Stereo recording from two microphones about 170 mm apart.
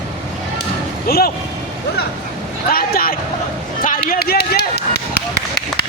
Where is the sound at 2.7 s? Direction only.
60° left (ahead or behind).